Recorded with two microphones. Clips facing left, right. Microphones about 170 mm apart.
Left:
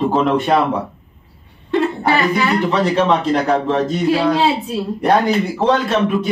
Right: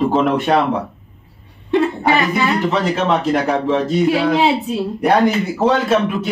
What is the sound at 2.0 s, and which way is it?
Speech, 20° right (ahead or behind).